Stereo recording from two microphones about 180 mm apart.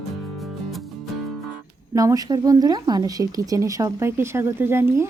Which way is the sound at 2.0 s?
20° right (ahead or behind).